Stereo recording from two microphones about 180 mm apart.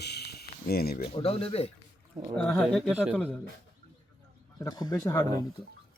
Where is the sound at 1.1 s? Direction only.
30° left (ahead or behind).